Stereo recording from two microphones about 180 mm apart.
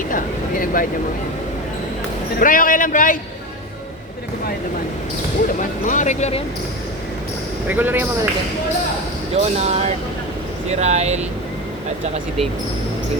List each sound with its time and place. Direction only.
0.6 s a man's voice: 50° left (ahead or behind)
2.4 s a man's voice: 50° left (ahead or behind)
5.8 s speech: 45° left (ahead or behind)
7.7 s speech: 10° right (ahead or behind)
9.3 s speech: 35° right (ahead or behind)